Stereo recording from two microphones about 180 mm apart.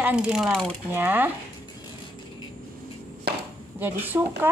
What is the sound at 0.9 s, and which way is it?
Speech, 10° right (ahead or behind).